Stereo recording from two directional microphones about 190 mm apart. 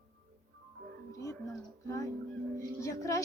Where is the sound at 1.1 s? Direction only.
15° left (ahead or behind).